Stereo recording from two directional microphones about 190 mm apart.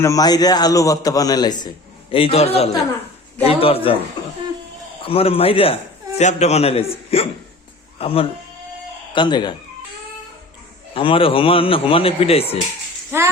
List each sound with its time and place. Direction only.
0.0 s a man's voice: 20° left (ahead or behind)
5.0 s a man's voice: 30° left (ahead or behind)
10.9 s a man's voice: 30° left (ahead or behind)
13.1 s speech: 15° right (ahead or behind)